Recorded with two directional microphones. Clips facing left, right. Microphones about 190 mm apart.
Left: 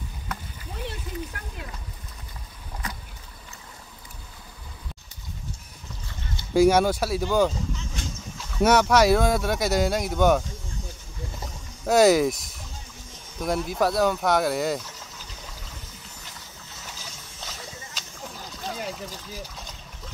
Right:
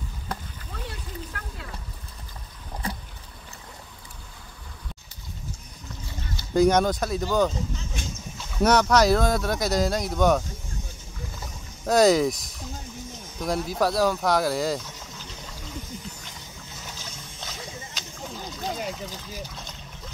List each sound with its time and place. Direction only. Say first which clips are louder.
0.8 s a sound: left 5 dB; 20° left (ahead or behind)
2.8 s boat: right 4 dB; 30° right (ahead or behind)
6.5 s speech: left 1 dB; 5° left (ahead or behind)
8.5 s speech: left 1 dB; 5° left (ahead or behind)
11.8 s speech: left 1 dB; 5° left (ahead or behind)
17.4 s a sound: right 2 dB; centre (ahead or behind)